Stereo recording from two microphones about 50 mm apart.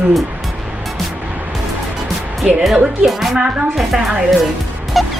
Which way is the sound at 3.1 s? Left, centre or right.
Centre.